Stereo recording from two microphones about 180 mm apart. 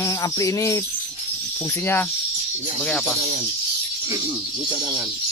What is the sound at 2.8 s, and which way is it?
Speech, 5° left (ahead or behind).